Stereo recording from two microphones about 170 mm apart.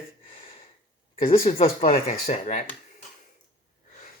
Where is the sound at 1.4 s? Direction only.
35° left (ahead or behind).